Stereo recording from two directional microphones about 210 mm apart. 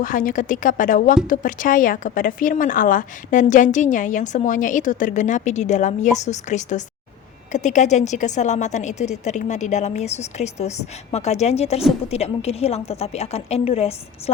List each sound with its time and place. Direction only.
0.0 s a woman's voice: 40° left (ahead or behind)